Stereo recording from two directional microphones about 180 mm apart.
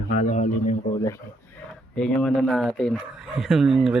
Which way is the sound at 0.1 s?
40° left (ahead or behind).